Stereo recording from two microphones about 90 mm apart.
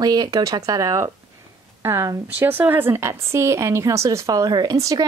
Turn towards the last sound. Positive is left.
turn(degrees=-40)  # may be behind; listen again after turning